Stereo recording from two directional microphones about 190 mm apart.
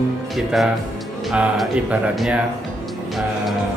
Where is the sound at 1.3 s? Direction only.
5° right (ahead or behind).